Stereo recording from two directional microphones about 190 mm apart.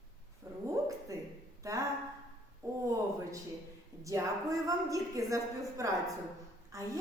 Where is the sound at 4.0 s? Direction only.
15° right (ahead or behind).